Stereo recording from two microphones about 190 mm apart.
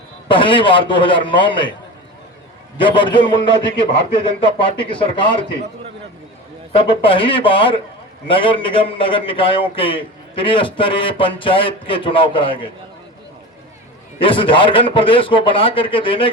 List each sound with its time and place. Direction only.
0.3 s a man's voice: 25° left (ahead or behind)
2.7 s a man's voice: 25° left (ahead or behind)
6.7 s a man's voice: 30° left (ahead or behind)
14.2 s a man's voice: 25° left (ahead or behind)